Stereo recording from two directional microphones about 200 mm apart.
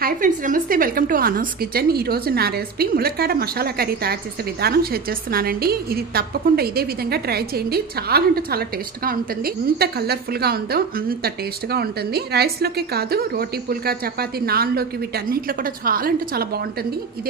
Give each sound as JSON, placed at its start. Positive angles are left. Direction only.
{"t": 0.0, "sound": "a woman's voice", "side_deg": -40}